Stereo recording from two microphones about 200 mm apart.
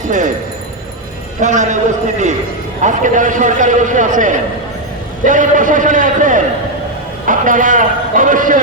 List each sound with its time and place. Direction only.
1.4 s a man's voice: 35° right (ahead or behind)